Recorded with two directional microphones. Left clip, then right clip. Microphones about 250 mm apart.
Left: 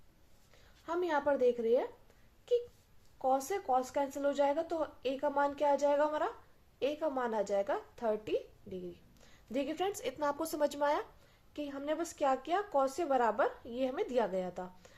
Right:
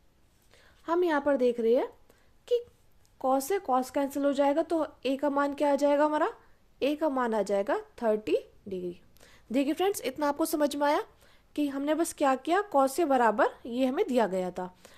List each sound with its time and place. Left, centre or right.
0.5 s a woman's voice: right